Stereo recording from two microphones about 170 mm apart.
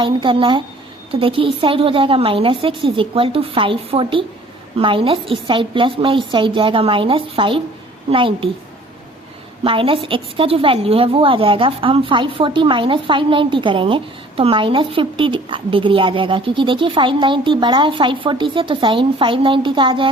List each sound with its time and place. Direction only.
0.0 s a woman's voice: 30° right (ahead or behind)
9.6 s a woman's voice: 30° right (ahead or behind)